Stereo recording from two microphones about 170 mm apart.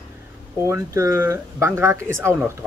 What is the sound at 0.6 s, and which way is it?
Speech, 15° right (ahead or behind).